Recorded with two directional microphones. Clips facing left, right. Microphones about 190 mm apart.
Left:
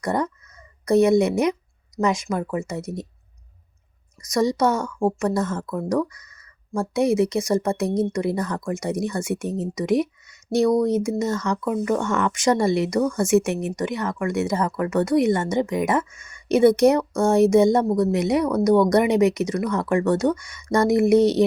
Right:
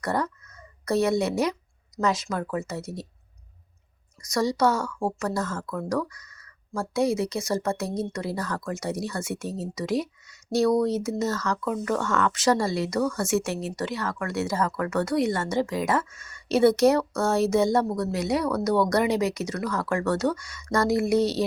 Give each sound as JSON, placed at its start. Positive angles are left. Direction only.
{"t": 0.0, "sound": "speech", "side_deg": 15}
{"t": 4.2, "sound": "speech", "side_deg": 20}